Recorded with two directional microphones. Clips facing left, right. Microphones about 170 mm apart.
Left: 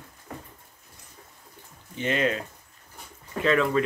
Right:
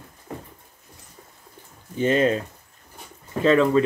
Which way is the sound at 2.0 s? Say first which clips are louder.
Right 6 dB; 35° right (ahead or behind).